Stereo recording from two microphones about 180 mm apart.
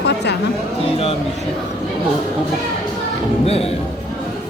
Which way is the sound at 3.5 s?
35° left (ahead or behind).